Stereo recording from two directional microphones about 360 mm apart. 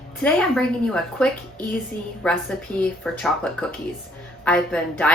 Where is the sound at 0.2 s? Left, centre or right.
Centre.